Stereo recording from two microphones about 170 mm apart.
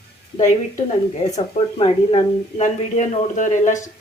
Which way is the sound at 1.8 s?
35° left (ahead or behind).